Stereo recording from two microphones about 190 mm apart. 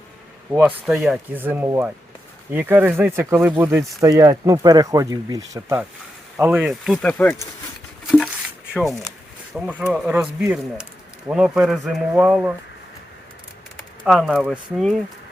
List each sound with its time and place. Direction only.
0.9 s speech: 5° right (ahead or behind)
9.6 s speech: 10° right (ahead or behind)
14.1 s speech: centre (ahead or behind)